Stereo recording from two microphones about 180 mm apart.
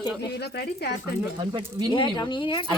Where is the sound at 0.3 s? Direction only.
65° left (ahead or behind).